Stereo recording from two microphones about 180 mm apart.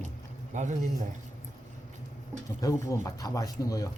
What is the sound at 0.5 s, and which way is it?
Speech, 40° right (ahead or behind).